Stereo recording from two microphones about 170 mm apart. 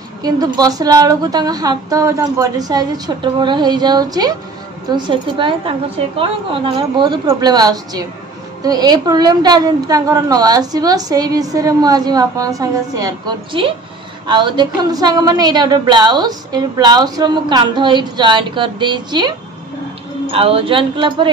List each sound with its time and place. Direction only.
0.2 s a woman's voice: 20° right (ahead or behind)